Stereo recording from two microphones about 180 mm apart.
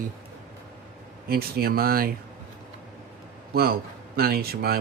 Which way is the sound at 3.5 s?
60° right (ahead or behind).